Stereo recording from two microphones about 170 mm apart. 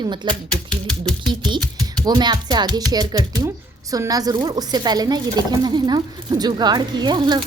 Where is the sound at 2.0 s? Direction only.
25° right (ahead or behind).